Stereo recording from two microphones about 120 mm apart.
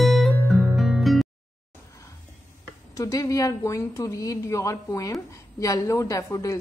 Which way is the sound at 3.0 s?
30° left (ahead or behind).